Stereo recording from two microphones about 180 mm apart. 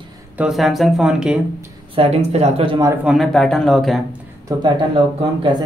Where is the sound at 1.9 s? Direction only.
35° right (ahead or behind).